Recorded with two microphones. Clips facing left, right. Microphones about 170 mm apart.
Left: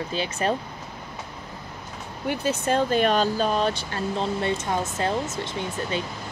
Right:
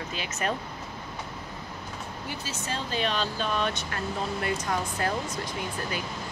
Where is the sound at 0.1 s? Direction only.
30° left (ahead or behind).